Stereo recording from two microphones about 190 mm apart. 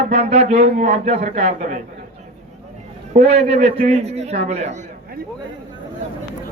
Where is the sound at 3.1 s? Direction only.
35° right (ahead or behind).